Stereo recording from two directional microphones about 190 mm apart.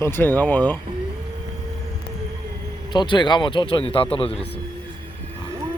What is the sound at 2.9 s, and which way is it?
Speech, 25° left (ahead or behind).